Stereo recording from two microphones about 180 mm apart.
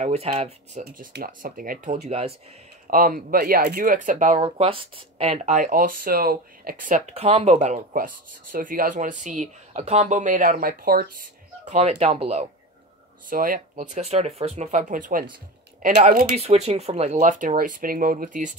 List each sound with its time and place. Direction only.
0.0 s speech: 35° right (ahead or behind)
0.8 s speech: 60° right (ahead or behind); by 2.3 s 35° right (ahead or behind)
2.9 s speech: 50° right (ahead or behind)
4.4 s speech: 30° right (ahead or behind); by 11.2 s 55° right (ahead or behind)
11.7 s speech: 35° right (ahead or behind)
13.3 s speech: 50° right (ahead or behind)
16.3 s speech: 35° right (ahead or behind)